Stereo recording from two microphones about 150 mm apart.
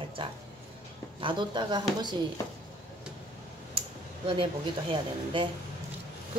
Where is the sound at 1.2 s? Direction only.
30° right (ahead or behind).